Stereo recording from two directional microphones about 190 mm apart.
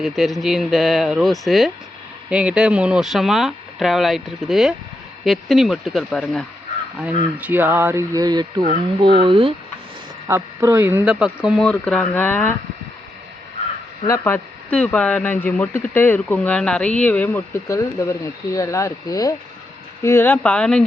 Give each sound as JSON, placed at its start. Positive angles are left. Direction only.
{"t": 0.0, "sound": "speech", "side_deg": 0}
{"t": 7.3, "sound": "speech", "side_deg": -10}
{"t": 10.2, "sound": "speech", "side_deg": -15}
{"t": 14.1, "sound": "speech", "side_deg": 10}